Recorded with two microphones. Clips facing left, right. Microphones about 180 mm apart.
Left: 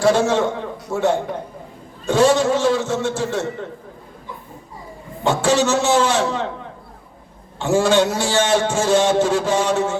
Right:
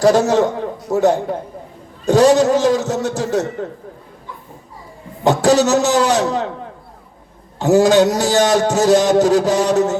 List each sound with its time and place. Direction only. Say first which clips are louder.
0.0 s a man's voice: right 3 dB; 40° right (ahead or behind)
5.2 s a man's voice: right 4 dB; 40° right (ahead or behind)
7.6 s a man's voice: right 5 dB; 40° right (ahead or behind)